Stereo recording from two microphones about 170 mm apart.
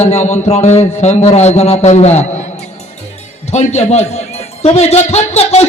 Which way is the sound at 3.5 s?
40° left (ahead or behind).